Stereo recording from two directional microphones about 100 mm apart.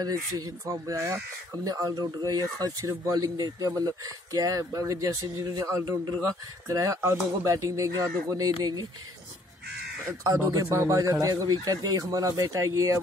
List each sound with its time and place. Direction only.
0.0 s speech: 40° right (ahead or behind)
10.2 s speech: 35° right (ahead or behind)